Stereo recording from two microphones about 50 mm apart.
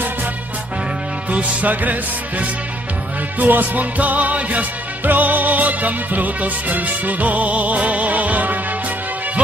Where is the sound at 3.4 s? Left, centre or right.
Right.